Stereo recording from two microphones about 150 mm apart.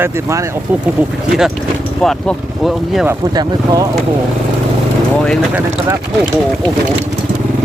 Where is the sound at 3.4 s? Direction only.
25° right (ahead or behind).